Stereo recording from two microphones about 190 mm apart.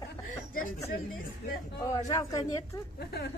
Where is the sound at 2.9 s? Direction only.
60° left (ahead or behind).